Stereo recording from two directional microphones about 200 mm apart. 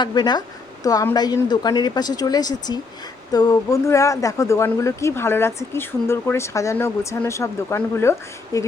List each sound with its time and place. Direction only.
0.0 s a woman's voice: 20° left (ahead or behind)